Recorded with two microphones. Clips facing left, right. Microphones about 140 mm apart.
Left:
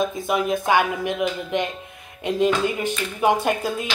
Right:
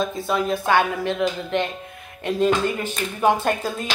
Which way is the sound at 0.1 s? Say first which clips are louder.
Even; 15° left (ahead or behind).